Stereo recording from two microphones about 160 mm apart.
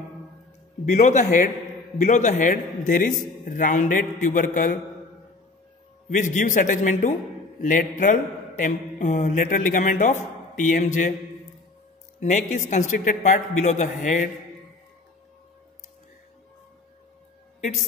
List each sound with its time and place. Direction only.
0.9 s a man's voice: 50° left (ahead or behind)
6.1 s a man's voice: 50° left (ahead or behind)
12.2 s a man's voice: 45° left (ahead or behind)